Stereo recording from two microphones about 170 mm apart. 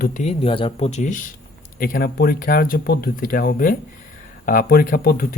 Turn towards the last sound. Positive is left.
turn(degrees=60)  # may be behind; listen again after turning